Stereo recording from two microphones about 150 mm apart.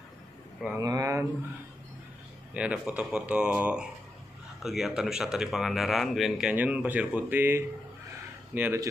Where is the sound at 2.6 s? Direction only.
10° right (ahead or behind).